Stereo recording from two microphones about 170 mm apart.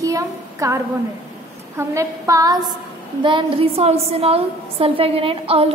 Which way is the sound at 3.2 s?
30° right (ahead or behind).